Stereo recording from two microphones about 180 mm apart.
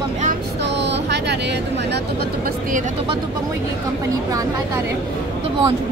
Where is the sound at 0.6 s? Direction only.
70° right (ahead or behind).